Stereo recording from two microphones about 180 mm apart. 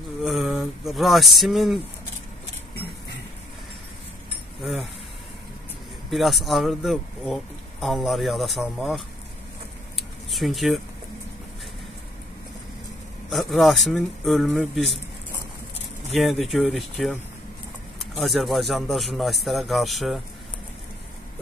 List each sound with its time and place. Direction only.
0.2 s speech: centre (ahead or behind)
6.0 s speech: centre (ahead or behind)
9.9 s a sound: centre (ahead or behind)
13.3 s speech: centre (ahead or behind)
16.1 s speech: centre (ahead or behind)